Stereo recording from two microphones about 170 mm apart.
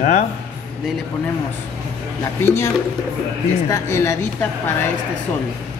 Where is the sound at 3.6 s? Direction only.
15° left (ahead or behind).